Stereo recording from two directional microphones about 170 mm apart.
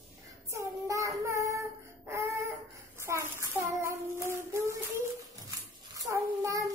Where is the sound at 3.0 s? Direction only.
15° right (ahead or behind).